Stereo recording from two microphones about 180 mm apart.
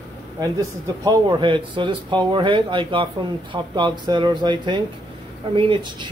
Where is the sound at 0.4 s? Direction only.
20° right (ahead or behind).